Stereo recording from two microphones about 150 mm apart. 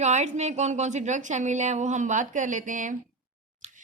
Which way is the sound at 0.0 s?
50° right (ahead or behind).